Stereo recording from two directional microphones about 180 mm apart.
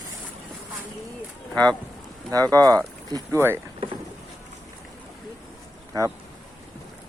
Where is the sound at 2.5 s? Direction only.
20° right (ahead or behind).